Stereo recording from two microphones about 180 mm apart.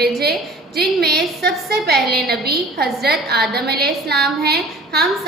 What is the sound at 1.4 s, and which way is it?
A woman's voice, 65° right (ahead or behind).